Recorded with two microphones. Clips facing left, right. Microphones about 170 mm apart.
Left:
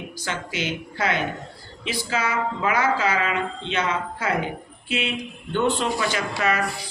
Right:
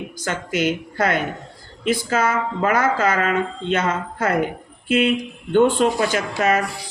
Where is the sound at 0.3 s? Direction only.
50° right (ahead or behind).